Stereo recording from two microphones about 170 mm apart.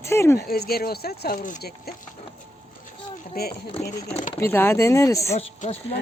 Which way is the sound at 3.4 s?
65° left (ahead or behind).